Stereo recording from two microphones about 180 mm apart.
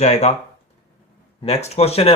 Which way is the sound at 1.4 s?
35° left (ahead or behind).